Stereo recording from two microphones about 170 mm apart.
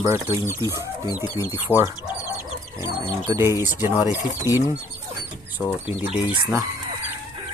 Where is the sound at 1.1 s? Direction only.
20° left (ahead or behind).